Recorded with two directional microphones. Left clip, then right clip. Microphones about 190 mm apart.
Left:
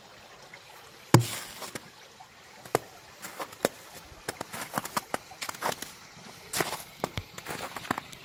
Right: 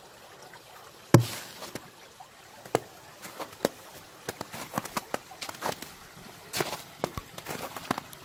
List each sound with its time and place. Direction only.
1.1 s a sound: 35° left (ahead or behind)
3.3 s a sound: 25° left (ahead or behind)
4.3 s run: 30° left (ahead or behind)
4.8 s horse: 30° left (ahead or behind)
6.5 s walk: 30° left (ahead or behind)
7.3 s clip-clop: 35° left (ahead or behind)